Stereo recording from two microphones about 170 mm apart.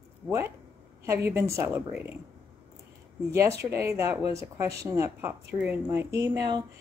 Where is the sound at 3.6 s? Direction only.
15° right (ahead or behind).